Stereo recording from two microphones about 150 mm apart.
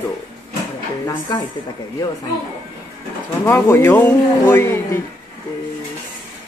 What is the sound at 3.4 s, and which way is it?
Speech, 15° left (ahead or behind).